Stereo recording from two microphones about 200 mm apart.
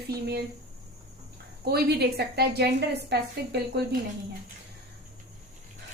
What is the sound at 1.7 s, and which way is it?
A woman's voice, 50° right (ahead or behind).